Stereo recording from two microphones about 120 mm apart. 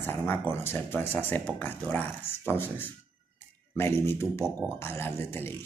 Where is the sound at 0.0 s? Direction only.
20° left (ahead or behind).